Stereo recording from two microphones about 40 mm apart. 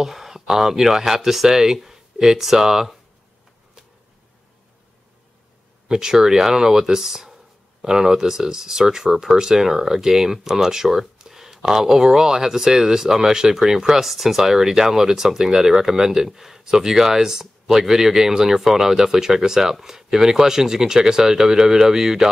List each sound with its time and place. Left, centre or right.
0.0 s speech: centre
5.9 s speech: centre